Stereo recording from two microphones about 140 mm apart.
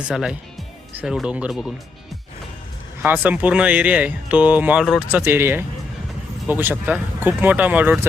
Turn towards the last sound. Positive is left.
turn(degrees=-10)  # may be behind; listen again after turning